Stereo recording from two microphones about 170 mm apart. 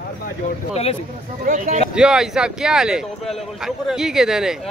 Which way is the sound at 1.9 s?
5° right (ahead or behind).